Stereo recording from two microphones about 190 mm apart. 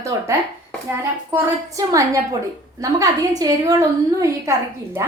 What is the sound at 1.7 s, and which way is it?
A woman's voice, 15° right (ahead or behind).